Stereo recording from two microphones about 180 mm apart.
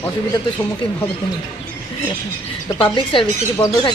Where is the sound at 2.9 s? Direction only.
25° left (ahead or behind).